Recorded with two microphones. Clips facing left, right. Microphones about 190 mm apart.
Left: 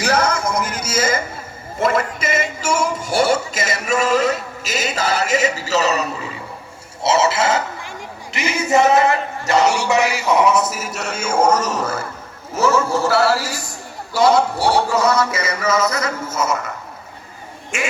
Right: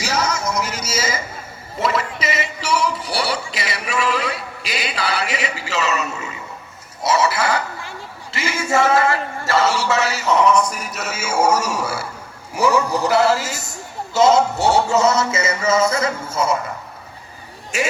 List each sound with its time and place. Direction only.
0.0 s speech: 55° left (ahead or behind)
1.8 s music: 50° left (ahead or behind); by 6.3 s 35° left (ahead or behind)
7.0 s speech: 25° left (ahead or behind)
8.3 s a sound: 20° left (ahead or behind); by 16.6 s 30° right (ahead or behind)